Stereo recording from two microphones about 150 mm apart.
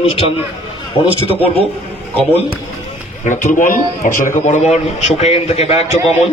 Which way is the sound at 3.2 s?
55° left (ahead or behind).